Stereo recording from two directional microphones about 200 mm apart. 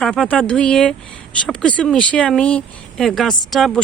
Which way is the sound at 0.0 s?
5° left (ahead or behind).